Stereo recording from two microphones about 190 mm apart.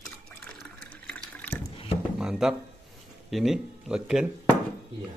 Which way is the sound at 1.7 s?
30° left (ahead or behind).